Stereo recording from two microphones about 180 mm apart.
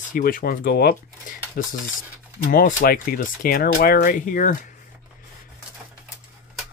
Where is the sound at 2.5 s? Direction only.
55° left (ahead or behind).